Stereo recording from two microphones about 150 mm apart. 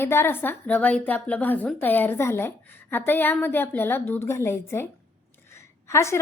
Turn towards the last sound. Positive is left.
turn(degrees=20)  # may be behind; listen again after turning